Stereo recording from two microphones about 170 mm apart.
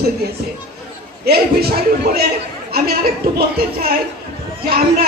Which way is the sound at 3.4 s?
65° right (ahead or behind).